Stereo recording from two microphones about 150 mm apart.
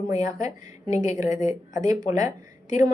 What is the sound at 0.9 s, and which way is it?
Speech, 50° left (ahead or behind).